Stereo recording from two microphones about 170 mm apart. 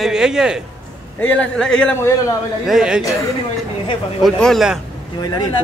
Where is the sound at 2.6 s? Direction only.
5° right (ahead or behind).